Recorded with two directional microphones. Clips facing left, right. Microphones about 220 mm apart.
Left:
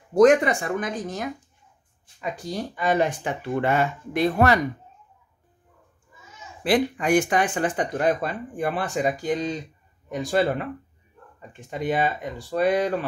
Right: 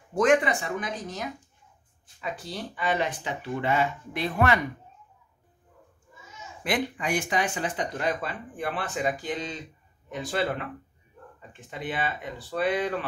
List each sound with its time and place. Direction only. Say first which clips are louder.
0.1 s speech: left 6 dB; 40° left (ahead or behind)
2.4 s speech: left 6 dB; 45° left (ahead or behind)
6.6 s speech: left 7 dB; 35° left (ahead or behind)
7.1 s speech: left 7 dB; 50° left (ahead or behind)
11.7 s speech: left 7 dB; 45° left (ahead or behind)